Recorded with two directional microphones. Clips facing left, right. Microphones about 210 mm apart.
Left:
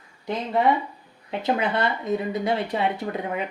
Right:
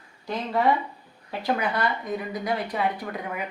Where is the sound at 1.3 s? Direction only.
20° left (ahead or behind).